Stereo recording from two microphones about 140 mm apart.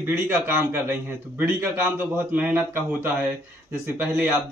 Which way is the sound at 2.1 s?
10° right (ahead or behind).